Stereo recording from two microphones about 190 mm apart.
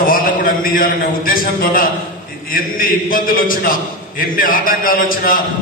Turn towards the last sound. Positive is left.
turn(degrees=50)  # may be behind; listen again after turning